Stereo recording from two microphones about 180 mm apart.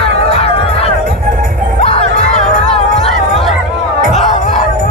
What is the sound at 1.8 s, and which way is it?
Music, 35° left (ahead or behind).